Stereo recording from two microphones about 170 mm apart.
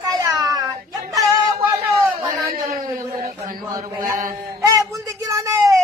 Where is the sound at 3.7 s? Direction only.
20° right (ahead or behind).